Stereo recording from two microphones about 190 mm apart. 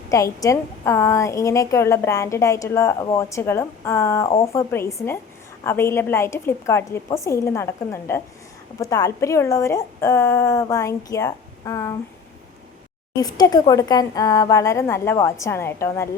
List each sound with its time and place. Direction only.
0.1 s a woman's voice: 15° left (ahead or behind)
13.1 s a woman's voice: 20° left (ahead or behind)